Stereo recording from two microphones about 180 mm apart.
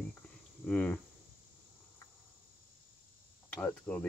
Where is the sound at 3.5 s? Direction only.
10° left (ahead or behind).